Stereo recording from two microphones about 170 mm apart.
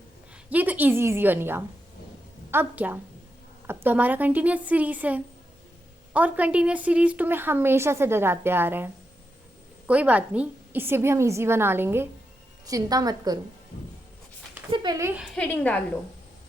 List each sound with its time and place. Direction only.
0.5 s a woman's voice: 10° right (ahead or behind)
14.7 s speech: 25° right (ahead or behind)
15.4 s a woman's voice: 10° left (ahead or behind)